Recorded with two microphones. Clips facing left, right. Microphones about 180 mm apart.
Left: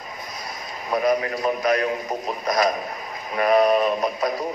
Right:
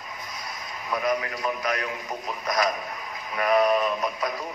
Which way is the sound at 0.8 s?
35° left (ahead or behind).